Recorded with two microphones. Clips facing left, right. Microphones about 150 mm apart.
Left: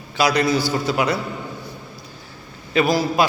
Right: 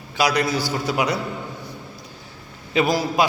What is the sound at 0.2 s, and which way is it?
Speech, 10° right (ahead or behind).